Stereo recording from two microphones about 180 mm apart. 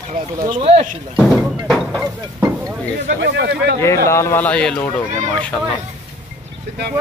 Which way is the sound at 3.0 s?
65° right (ahead or behind).